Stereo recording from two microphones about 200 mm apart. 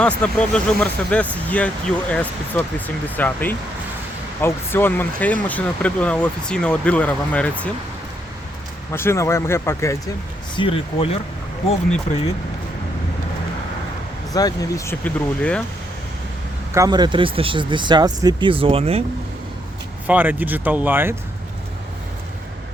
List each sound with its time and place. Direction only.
0.2 s speech: 5° left (ahead or behind)
8.9 s speech: 10° left (ahead or behind)
10.5 s speech: 25° left (ahead or behind)
14.3 s speech: 20° left (ahead or behind)
16.7 s speech: 20° right (ahead or behind)
20.1 s speech: 10° right (ahead or behind)